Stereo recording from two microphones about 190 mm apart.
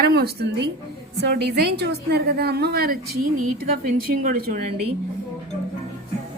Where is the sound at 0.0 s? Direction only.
55° right (ahead or behind).